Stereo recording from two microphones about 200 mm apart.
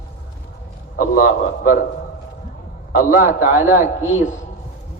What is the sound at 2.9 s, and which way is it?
A man's voice, 45° left (ahead or behind).